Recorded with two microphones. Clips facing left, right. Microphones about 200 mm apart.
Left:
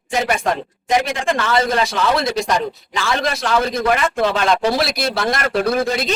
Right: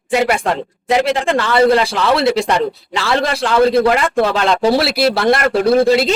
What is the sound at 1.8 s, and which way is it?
A man's voice, 30° right (ahead or behind).